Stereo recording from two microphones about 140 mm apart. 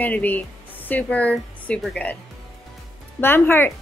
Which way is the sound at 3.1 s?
15° left (ahead or behind).